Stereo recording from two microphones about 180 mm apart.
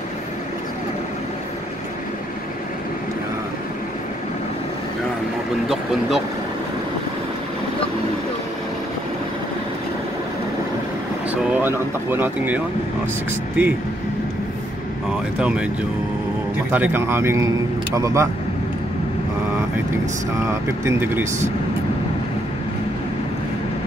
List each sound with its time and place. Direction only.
5.7 s speech: centre (ahead or behind)
11.5 s speech: 10° right (ahead or behind)
15.3 s speech: 5° right (ahead or behind)
16.7 s speech: 10° right (ahead or behind)
20.8 s speech: 15° right (ahead or behind)